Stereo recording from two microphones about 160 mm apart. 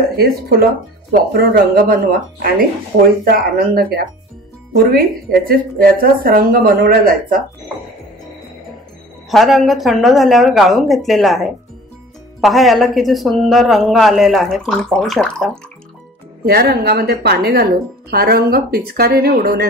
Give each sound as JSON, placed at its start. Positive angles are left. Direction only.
{"t": 0.2, "sound": "speech", "side_deg": -70}
{"t": 5.3, "sound": "speech", "side_deg": -65}
{"t": 9.3, "sound": "speech", "side_deg": 0}
{"t": 16.4, "sound": "speech", "side_deg": -80}